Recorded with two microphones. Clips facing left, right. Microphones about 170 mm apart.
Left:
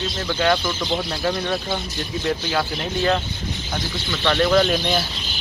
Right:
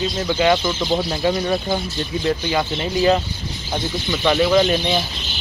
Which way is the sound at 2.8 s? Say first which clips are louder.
Right 7 dB; 5° right (ahead or behind).